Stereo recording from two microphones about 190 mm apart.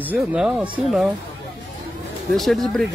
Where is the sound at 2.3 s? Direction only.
Centre (ahead or behind).